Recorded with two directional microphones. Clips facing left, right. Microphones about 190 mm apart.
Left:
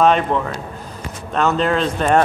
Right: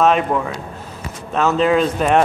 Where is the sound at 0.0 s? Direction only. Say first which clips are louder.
Even; 5° right (ahead or behind).